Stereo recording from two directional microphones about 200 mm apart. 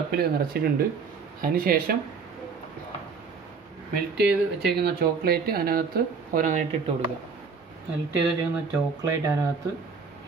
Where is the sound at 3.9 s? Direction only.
55° right (ahead or behind).